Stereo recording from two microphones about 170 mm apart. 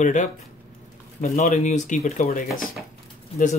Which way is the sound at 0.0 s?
45° left (ahead or behind).